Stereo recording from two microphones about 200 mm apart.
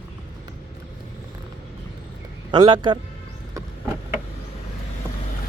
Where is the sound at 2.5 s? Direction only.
20° right (ahead or behind).